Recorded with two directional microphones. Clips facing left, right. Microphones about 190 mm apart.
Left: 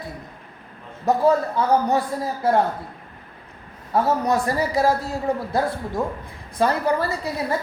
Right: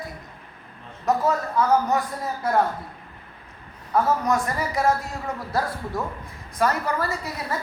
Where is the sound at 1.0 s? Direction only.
30° left (ahead or behind).